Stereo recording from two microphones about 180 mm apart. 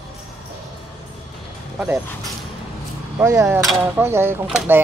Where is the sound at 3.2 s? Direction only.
15° right (ahead or behind).